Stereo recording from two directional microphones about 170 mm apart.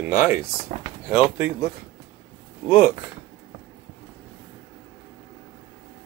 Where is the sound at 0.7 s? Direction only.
40° right (ahead or behind).